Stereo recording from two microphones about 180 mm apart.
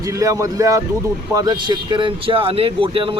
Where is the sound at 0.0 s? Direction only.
20° right (ahead or behind).